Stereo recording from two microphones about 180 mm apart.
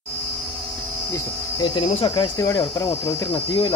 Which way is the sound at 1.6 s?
25° left (ahead or behind).